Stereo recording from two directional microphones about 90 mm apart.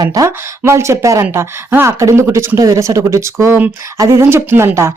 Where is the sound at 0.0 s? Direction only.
40° right (ahead or behind).